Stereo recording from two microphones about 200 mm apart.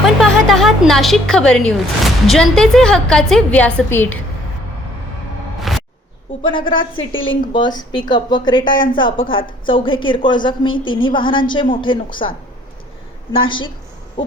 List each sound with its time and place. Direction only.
0.0 s music: centre (ahead or behind)
2.2 s a woman's voice: centre (ahead or behind)
5.7 s a sound: centre (ahead or behind)
6.4 s a woman's voice: 25° left (ahead or behind)
6.9 s a woman's voice: 75° left (ahead or behind)
7.3 s a woman's voice: 25° left (ahead or behind)
13.3 s a woman's voice: 25° left (ahead or behind)